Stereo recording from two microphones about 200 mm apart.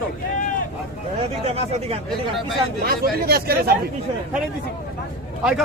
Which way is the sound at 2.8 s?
50° right (ahead or behind).